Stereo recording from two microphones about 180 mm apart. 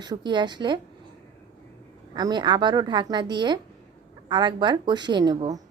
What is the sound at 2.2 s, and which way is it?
A woman's voice, 25° right (ahead or behind).